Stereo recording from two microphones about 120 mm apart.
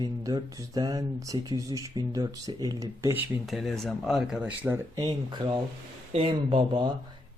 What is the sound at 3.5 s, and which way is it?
Speech, centre (ahead or behind).